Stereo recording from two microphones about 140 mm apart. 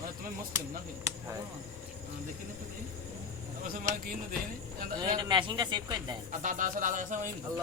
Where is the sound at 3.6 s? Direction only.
75° right (ahead or behind).